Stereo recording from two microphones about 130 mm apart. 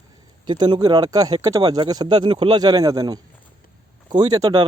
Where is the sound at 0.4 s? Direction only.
35° right (ahead or behind).